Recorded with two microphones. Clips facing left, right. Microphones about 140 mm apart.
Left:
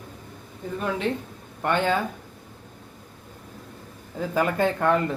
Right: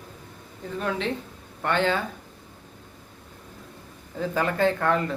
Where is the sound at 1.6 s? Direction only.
15° left (ahead or behind).